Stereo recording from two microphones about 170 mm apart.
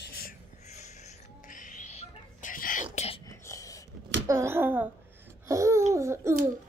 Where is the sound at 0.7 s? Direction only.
40° left (ahead or behind).